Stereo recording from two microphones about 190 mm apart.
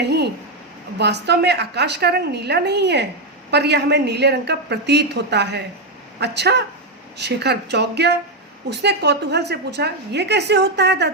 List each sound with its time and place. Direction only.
0.0 s a woman's voice: 60° right (ahead or behind)